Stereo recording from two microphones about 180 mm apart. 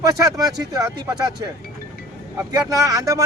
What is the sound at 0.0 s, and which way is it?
Speech, 20° right (ahead or behind).